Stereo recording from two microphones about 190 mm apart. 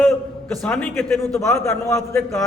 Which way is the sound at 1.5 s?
15° left (ahead or behind).